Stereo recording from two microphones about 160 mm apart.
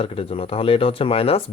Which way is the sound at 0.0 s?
35° left (ahead or behind).